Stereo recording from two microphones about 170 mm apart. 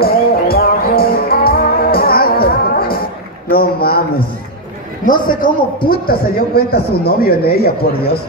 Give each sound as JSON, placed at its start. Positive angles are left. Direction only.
{"t": 0.0, "sound": "music", "side_deg": 65}
{"t": 3.4, "sound": "a sound", "side_deg": 60}
{"t": 5.0, "sound": "a man's voice", "side_deg": 50}